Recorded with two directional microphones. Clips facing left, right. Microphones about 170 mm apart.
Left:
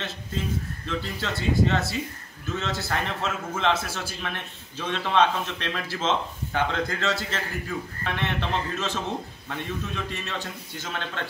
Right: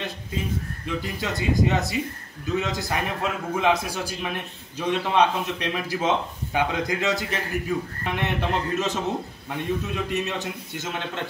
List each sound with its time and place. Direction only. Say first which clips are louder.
0.8 s a man's voice: right 2 dB; 10° right (ahead or behind)